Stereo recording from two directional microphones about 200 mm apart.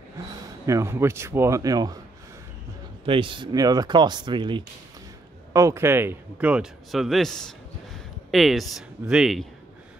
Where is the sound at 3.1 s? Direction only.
25° right (ahead or behind).